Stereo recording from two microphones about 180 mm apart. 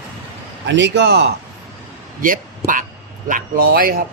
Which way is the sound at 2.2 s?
50° right (ahead or behind).